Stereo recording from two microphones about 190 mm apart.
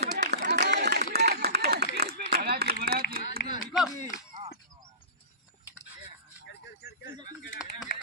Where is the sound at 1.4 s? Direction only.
55° right (ahead or behind).